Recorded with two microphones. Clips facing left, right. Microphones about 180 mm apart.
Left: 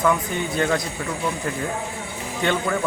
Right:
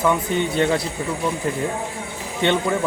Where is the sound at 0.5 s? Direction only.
25° right (ahead or behind).